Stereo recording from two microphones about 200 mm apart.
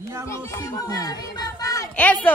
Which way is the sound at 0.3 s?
15° left (ahead or behind).